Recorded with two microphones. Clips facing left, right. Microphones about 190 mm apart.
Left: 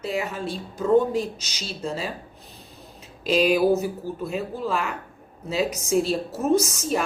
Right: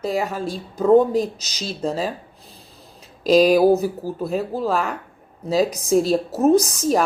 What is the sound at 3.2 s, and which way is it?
A woman's voice, 40° right (ahead or behind).